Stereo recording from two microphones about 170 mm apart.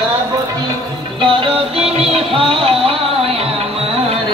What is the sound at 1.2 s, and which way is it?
Music, 30° right (ahead or behind).